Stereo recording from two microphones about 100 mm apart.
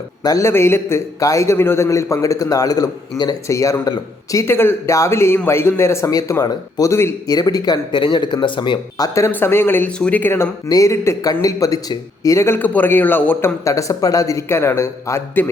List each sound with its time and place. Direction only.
0.2 s a man's voice: 40° left (ahead or behind)
0.4 s a man's voice: 25° left (ahead or behind)
4.4 s a man's voice: 25° left (ahead or behind); by 9.0 s 50° left (ahead or behind)
9.1 s a man's voice: 25° left (ahead or behind)
10.7 s a man's voice: 35° left (ahead or behind)
13.7 s a man's voice: 35° left (ahead or behind)